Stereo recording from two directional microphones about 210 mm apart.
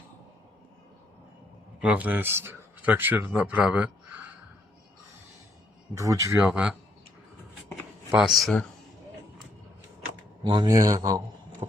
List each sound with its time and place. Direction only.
1.8 s a man's voice: 5° right (ahead or behind)
5.9 s a man's voice: 15° right (ahead or behind)
8.4 s speech: centre (ahead or behind)
10.4 s a man's voice: 20° right (ahead or behind)